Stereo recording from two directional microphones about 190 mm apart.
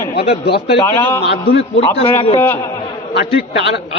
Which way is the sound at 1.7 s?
30° left (ahead or behind).